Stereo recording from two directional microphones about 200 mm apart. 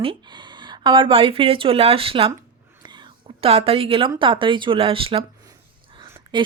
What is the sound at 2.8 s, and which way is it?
Whispering, 20° right (ahead or behind).